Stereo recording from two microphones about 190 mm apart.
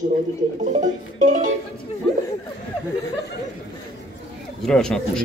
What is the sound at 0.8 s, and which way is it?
Music, 40° right (ahead or behind).